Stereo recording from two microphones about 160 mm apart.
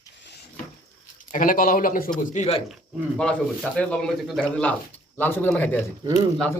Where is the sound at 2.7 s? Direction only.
5° left (ahead or behind).